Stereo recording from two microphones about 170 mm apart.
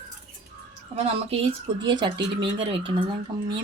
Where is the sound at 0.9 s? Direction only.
35° right (ahead or behind).